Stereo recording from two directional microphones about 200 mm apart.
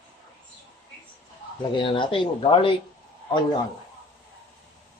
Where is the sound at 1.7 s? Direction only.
25° left (ahead or behind).